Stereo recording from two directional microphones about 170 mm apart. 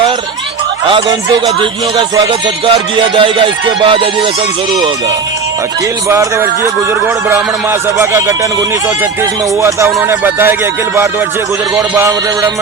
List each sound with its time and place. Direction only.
0.9 s music: 25° right (ahead or behind)
3.2 s music: 30° right (ahead or behind)
6.1 s speech: 15° right (ahead or behind)
9.6 s speech: 15° right (ahead or behind)
11.9 s speech: 15° right (ahead or behind)